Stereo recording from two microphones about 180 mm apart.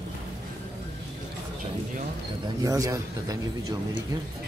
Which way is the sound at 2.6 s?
20° right (ahead or behind).